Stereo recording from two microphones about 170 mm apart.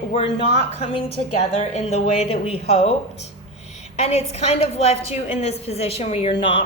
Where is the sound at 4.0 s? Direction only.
40° left (ahead or behind).